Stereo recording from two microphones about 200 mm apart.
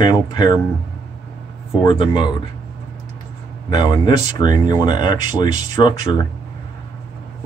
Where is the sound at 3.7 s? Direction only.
25° left (ahead or behind).